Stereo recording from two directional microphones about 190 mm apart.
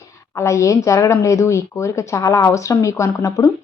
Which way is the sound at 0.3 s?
15° left (ahead or behind).